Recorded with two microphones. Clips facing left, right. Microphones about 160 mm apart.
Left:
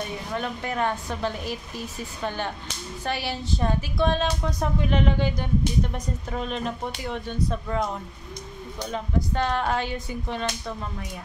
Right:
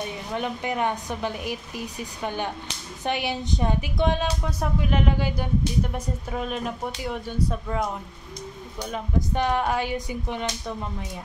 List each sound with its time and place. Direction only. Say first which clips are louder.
0.3 s speech: right 3 dB; 15° right (ahead or behind)
8.9 s speech: even; 15° right (ahead or behind)